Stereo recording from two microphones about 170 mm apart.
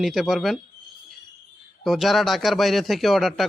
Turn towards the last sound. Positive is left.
turn(degrees=0)  # may be behind; listen again after turning